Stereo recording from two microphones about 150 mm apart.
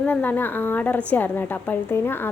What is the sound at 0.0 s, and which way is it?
A woman's voice, 10° left (ahead or behind).